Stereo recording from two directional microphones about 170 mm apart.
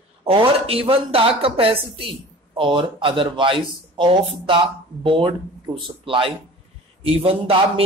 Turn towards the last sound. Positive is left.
turn(degrees=-35)  # may be behind; listen again after turning